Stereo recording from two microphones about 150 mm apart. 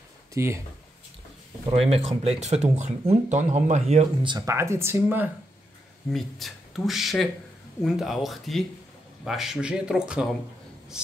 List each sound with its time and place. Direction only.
0.3 s speech: 20° right (ahead or behind)
1.7 s speech: 45° right (ahead or behind)
4.3 s speech: 25° right (ahead or behind)
6.1 s speech: centre (ahead or behind)